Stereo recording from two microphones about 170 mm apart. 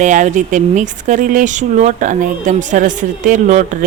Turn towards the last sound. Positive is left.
turn(degrees=-50)  # may be behind; listen again after turning